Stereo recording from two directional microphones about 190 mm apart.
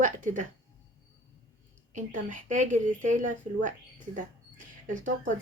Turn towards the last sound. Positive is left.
turn(degrees=-45)  # may be behind; listen again after turning